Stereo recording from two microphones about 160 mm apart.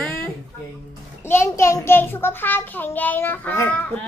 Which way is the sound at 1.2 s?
15° left (ahead or behind).